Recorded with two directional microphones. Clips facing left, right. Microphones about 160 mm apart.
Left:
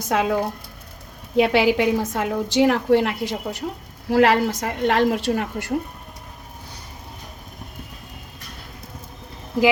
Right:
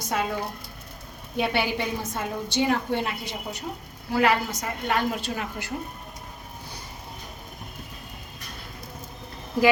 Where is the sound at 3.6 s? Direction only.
65° left (ahead or behind).